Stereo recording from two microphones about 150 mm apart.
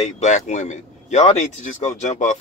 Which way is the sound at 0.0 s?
50° left (ahead or behind).